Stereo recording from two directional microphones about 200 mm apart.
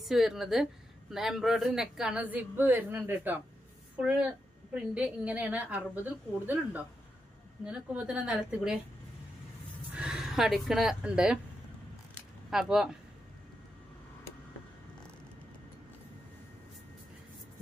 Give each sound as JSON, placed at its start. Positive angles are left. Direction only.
{"t": 0.0, "sound": "a woman's voice", "side_deg": 0}
{"t": 9.9, "sound": "speech", "side_deg": -5}
{"t": 12.5, "sound": "speech", "side_deg": 0}